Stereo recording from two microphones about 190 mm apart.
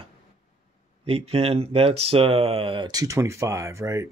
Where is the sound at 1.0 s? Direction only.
30° right (ahead or behind).